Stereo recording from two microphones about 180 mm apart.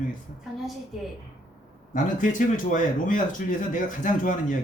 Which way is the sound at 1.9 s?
45° left (ahead or behind).